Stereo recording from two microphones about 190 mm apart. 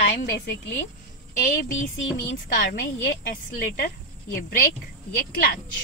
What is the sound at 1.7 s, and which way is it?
Music, 85° left.